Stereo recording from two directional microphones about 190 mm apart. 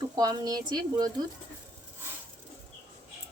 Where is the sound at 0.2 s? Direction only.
20° right (ahead or behind).